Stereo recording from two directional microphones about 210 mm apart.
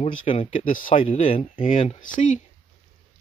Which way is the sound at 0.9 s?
25° left (ahead or behind).